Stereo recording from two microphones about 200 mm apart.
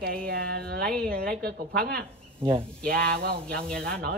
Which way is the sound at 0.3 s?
50° right (ahead or behind).